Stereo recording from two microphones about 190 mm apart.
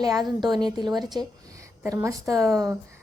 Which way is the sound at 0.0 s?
20° right (ahead or behind).